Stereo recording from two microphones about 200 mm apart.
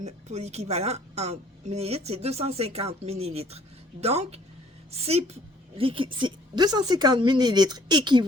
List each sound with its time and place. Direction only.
0.0 s a woman's voice: 35° right (ahead or behind)